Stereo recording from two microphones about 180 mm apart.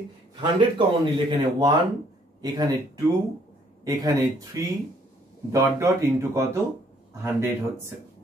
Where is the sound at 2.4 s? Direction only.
20° right (ahead or behind).